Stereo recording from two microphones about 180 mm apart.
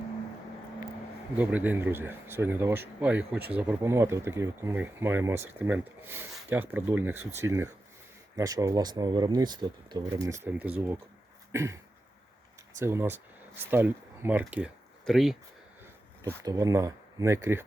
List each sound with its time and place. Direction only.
1.4 s speech: 10° right (ahead or behind)
12.8 s speech: 15° right (ahead or behind)
16.4 s speech: 20° right (ahead or behind)